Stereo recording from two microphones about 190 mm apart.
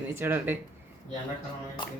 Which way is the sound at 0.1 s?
10° right (ahead or behind).